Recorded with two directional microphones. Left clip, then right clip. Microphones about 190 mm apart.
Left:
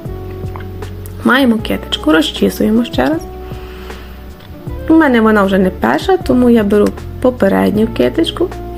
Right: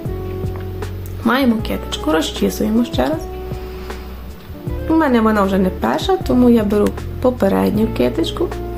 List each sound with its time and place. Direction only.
1.2 s speech: 25° left (ahead or behind)
4.9 s a woman's voice: 20° left (ahead or behind)